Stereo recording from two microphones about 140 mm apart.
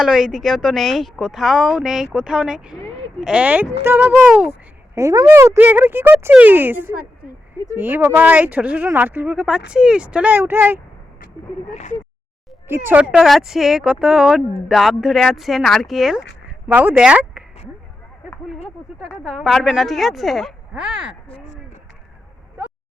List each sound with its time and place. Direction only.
0.0 s speech: 5° right (ahead or behind)
11.7 s speech: 55° left (ahead or behind)
12.6 s speech: 15° right (ahead or behind)
18.9 s speech: centre (ahead or behind)
21.2 s speech: 40° left (ahead or behind)